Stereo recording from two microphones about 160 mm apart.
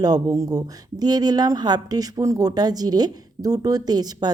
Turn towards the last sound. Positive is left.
turn(degrees=-25)  # may be behind; listen again after turning